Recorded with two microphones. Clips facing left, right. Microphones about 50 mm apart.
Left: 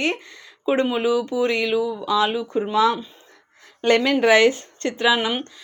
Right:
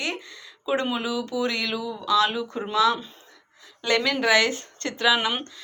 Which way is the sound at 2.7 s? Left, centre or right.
Left.